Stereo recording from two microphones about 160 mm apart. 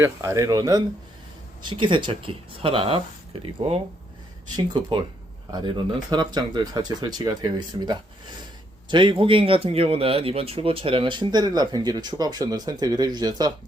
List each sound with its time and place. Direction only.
0.0 s speech: 20° right (ahead or behind); by 3.0 s 35° right (ahead or behind)
4.5 s speech: 30° right (ahead or behind)